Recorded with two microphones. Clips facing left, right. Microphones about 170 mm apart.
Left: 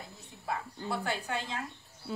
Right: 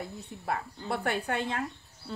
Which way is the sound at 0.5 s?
60° right (ahead or behind).